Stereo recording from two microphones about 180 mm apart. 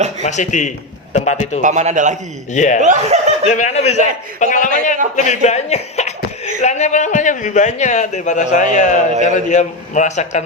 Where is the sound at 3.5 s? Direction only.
40° left (ahead or behind).